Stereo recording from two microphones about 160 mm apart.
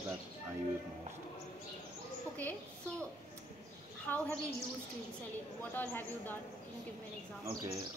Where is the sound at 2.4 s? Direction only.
10° left (ahead or behind).